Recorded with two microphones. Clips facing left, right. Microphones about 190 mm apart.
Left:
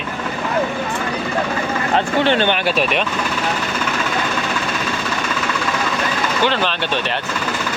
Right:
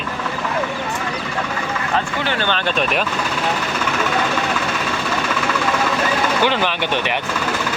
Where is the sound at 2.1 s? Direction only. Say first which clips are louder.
Left 5 dB; 25° left (ahead or behind); by 3.0 s centre (ahead or behind).